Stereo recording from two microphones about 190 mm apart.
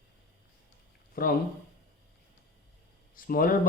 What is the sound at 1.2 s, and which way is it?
Speech, 50° left (ahead or behind).